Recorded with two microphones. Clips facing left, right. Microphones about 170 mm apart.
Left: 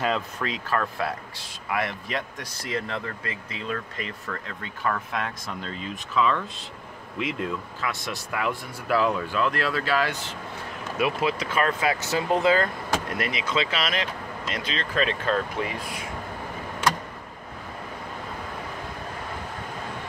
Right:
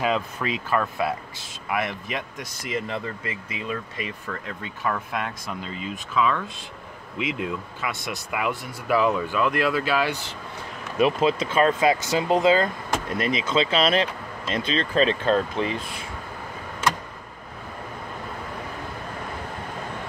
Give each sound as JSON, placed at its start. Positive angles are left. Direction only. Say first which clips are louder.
{"t": 0.0, "sound": "speech", "louder": "right 2 dB", "side_deg": -5}
{"t": 11.0, "sound": "speech", "louder": "right 5 dB", "side_deg": -25}